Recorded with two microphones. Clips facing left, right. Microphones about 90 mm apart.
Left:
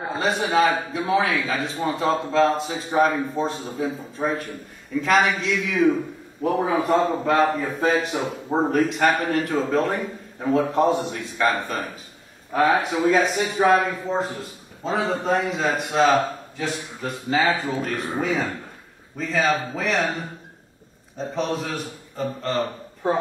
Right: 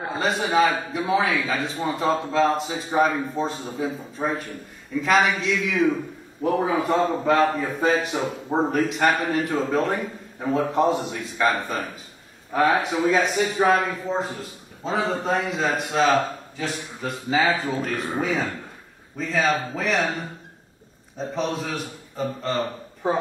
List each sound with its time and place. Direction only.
0.0 s a man's voice: centre (ahead or behind)
12.9 s a man's voice: centre (ahead or behind)